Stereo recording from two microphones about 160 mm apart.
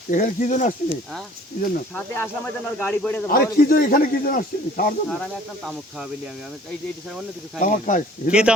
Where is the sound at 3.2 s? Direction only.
65° left (ahead or behind).